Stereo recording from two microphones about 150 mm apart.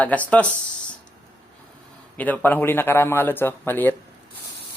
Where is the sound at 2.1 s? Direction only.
10° left (ahead or behind).